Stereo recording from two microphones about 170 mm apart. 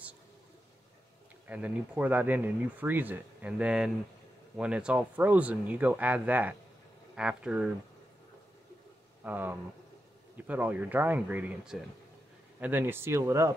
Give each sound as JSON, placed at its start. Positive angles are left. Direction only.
{"t": 1.5, "sound": "speech", "side_deg": -10}
{"t": 9.2, "sound": "speech", "side_deg": -10}